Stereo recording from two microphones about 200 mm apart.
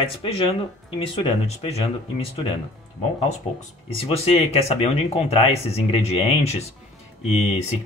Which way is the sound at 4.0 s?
30° left (ahead or behind).